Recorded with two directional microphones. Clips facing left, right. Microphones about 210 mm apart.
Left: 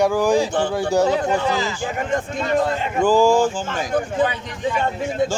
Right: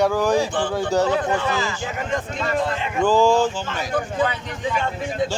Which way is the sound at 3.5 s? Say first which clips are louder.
Left 2 dB; 50° left (ahead or behind).